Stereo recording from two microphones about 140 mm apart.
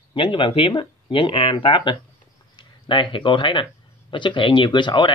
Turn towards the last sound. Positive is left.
turn(degrees=35)  # may be behind; listen again after turning